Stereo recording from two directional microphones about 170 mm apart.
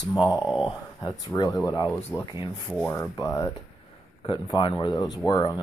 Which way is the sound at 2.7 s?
5° left (ahead or behind).